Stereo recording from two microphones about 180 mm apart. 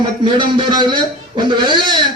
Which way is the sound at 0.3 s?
25° right (ahead or behind).